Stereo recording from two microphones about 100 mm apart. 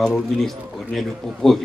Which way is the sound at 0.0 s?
5° left (ahead or behind).